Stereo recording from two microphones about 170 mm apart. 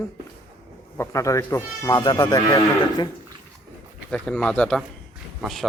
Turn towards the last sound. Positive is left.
turn(degrees=0)  # may be behind; listen again after turning